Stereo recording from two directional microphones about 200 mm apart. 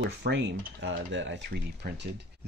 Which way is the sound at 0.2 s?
65° right (ahead or behind).